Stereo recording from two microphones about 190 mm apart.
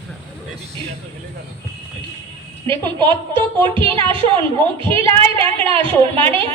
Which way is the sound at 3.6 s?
25° right (ahead or behind).